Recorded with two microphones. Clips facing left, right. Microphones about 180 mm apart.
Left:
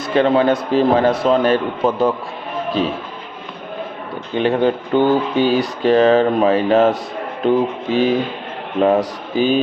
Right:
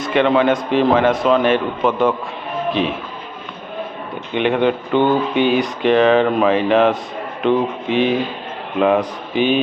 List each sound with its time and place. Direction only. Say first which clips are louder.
0.0 s speech: left 1 dB; 40° left (ahead or behind)
4.4 s speech: even; 35° left (ahead or behind)